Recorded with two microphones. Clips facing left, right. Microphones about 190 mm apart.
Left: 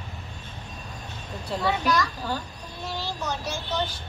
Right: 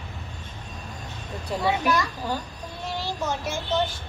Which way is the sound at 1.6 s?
20° right (ahead or behind).